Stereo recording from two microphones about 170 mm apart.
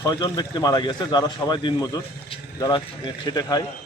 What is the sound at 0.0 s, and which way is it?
Speech, 25° left (ahead or behind).